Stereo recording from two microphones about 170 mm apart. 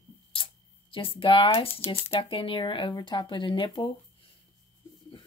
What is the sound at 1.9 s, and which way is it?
Speech, 30° left (ahead or behind).